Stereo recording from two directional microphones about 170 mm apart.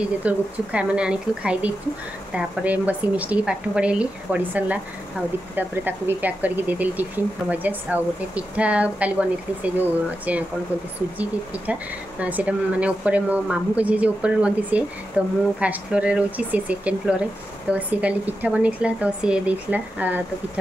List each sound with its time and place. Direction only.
0.0 s a woman's voice: 5° right (ahead or behind)